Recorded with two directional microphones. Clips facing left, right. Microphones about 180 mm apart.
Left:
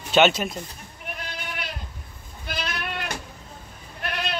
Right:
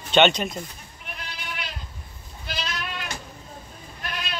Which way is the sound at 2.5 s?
55° left (ahead or behind).